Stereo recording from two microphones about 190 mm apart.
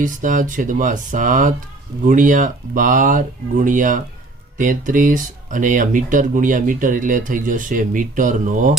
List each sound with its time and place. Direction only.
0.0 s speech: 45° right (ahead or behind)